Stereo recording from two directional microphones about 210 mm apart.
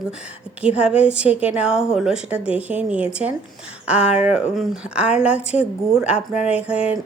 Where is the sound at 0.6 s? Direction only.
5° right (ahead or behind).